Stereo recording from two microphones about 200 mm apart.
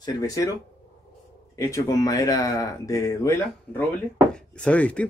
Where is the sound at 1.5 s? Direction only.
15° left (ahead or behind).